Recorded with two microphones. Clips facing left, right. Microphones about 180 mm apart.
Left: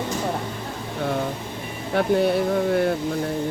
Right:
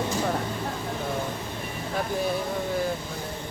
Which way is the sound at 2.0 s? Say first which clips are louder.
Left 8 dB; 70° left (ahead or behind).